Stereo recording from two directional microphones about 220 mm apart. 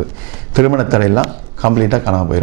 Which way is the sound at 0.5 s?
15° right (ahead or behind).